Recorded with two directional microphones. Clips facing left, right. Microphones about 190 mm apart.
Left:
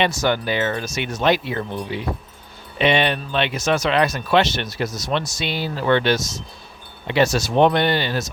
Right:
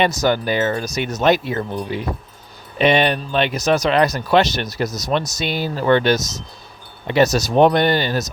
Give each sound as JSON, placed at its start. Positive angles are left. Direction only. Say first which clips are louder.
{"t": 0.0, "sound": "speech", "louder": "right 3 dB", "side_deg": -40}